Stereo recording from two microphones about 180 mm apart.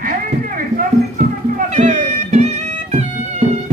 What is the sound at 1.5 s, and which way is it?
Music, 45° right (ahead or behind).